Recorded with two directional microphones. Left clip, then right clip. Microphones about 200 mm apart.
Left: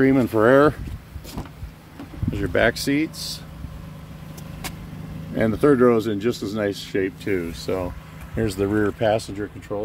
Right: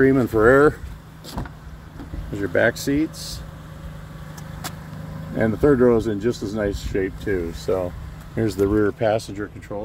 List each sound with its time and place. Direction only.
0.0 s speech: 5° left (ahead or behind)
2.3 s speech: 5° left (ahead or behind)
5.3 s speech: 15° right (ahead or behind); by 8.8 s 5° left (ahead or behind)
8.8 s speech: 20° left (ahead or behind)